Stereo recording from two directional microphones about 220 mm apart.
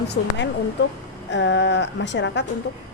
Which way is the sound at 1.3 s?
55° left (ahead or behind).